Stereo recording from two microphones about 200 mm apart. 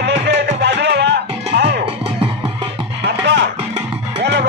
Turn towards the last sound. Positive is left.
turn(degrees=-60)  # may be behind; listen again after turning